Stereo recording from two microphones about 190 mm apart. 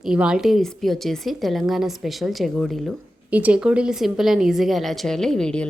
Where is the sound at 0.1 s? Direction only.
5° right (ahead or behind).